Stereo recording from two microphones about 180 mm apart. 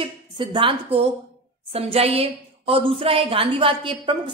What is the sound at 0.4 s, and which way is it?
A woman's voice, 30° right (ahead or behind).